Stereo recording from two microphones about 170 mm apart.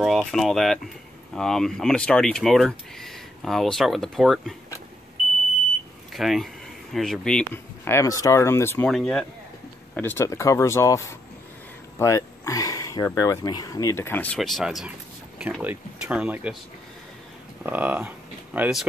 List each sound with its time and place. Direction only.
0.0 s speech: centre (ahead or behind)
6.1 s speech: centre (ahead or behind); by 8.8 s 15° left (ahead or behind)
8.8 s speech: 5° left (ahead or behind)
12.0 s speech: 15° left (ahead or behind); by 16.5 s 5° right (ahead or behind)
17.6 s speech: 10° right (ahead or behind)